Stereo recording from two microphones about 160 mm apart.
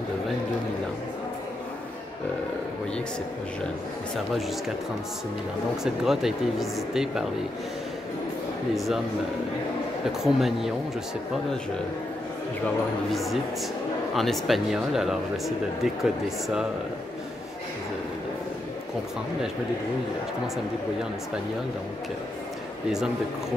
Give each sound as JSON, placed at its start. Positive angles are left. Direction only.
{"t": 5.9, "sound": "speech", "side_deg": 0}
{"t": 8.7, "sound": "speech", "side_deg": 0}
{"t": 10.2, "sound": "speech", "side_deg": 0}
{"t": 13.1, "sound": "speech", "side_deg": 0}